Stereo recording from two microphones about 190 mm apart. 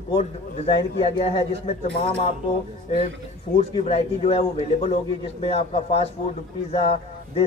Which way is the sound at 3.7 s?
30° left (ahead or behind).